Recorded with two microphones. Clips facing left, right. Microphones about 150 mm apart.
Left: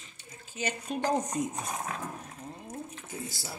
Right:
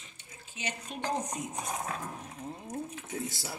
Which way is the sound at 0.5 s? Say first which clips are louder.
Left 6 dB; 45° left (ahead or behind).